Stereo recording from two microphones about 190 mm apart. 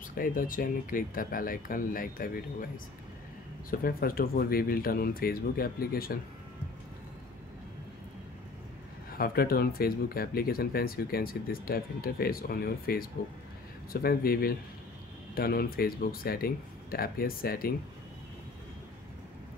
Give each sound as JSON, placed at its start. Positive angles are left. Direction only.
{"t": 0.1, "sound": "speech", "side_deg": 45}
{"t": 3.8, "sound": "speech", "side_deg": 50}
{"t": 9.1, "sound": "speech", "side_deg": 50}